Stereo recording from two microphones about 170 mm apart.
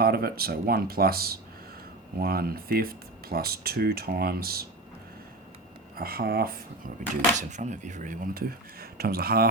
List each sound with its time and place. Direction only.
0.0 s speech: 65° right (ahead or behind)
6.0 s speech: 60° right (ahead or behind)
7.3 s speech: 45° right (ahead or behind); by 9.5 s 65° right (ahead or behind)